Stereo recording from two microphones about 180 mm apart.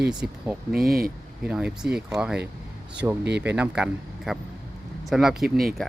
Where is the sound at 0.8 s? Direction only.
55° right (ahead or behind).